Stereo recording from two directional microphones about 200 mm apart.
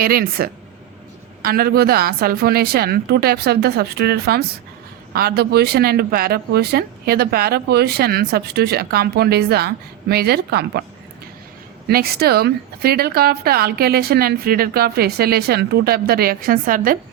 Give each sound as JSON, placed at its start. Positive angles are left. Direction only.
{"t": 0.0, "sound": "speech", "side_deg": -50}
{"t": 11.9, "sound": "speech", "side_deg": -50}